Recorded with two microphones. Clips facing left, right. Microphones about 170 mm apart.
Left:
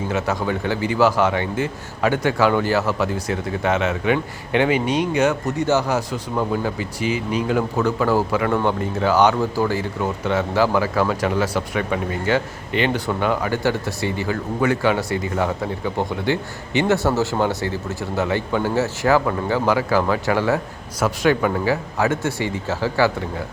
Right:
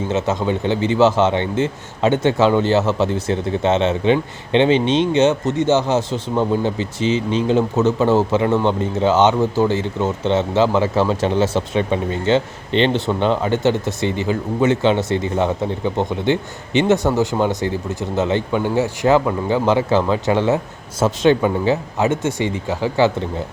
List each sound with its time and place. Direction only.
0.1 s a man's voice: 20° right (ahead or behind)